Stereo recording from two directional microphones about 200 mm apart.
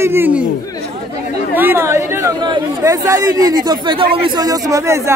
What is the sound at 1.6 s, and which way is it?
Speech, 10° right (ahead or behind).